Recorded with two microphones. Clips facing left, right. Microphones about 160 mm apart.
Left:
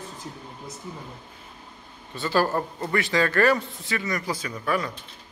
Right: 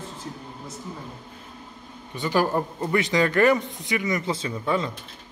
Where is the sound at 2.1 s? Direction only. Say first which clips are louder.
Right 1 dB; 15° right (ahead or behind).